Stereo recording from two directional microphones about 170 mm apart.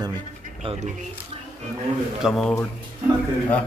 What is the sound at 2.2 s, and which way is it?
Speech, centre (ahead or behind).